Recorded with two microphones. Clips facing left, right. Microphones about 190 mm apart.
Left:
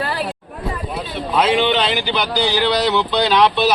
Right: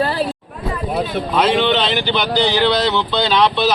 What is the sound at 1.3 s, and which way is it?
Speech, 5° left (ahead or behind).